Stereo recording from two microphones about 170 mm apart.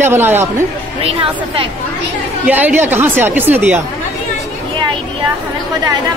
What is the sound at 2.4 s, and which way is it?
Speech, 10° right (ahead or behind).